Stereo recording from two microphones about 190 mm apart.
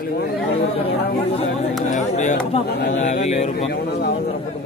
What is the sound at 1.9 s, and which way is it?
Music, 40° left (ahead or behind).